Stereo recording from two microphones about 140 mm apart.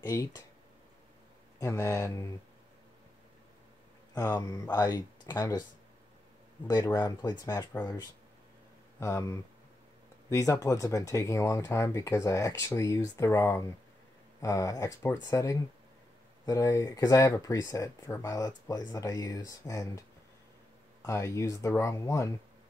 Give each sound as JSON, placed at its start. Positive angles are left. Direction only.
{"t": 0.0, "sound": "speech", "side_deg": 25}
{"t": 1.6, "sound": "speech", "side_deg": 20}
{"t": 4.1, "sound": "speech", "side_deg": 30}
{"t": 6.7, "sound": "speech", "side_deg": 30}